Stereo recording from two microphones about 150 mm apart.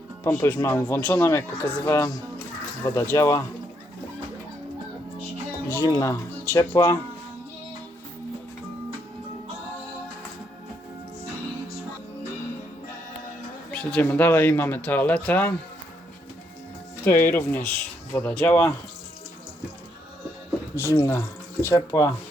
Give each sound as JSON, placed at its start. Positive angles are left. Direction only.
{"t": 0.3, "sound": "speech", "side_deg": 15}
{"t": 5.6, "sound": "speech", "side_deg": 20}
{"t": 13.7, "sound": "speech", "side_deg": 10}
{"t": 17.0, "sound": "speech", "side_deg": 15}
{"t": 20.9, "sound": "speech", "side_deg": 25}